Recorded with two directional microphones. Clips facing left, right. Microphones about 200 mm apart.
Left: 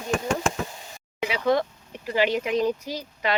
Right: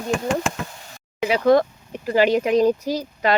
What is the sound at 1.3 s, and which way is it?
Speech, 40° right (ahead or behind).